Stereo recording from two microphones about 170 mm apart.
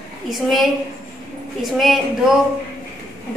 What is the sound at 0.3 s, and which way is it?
Speech, centre (ahead or behind).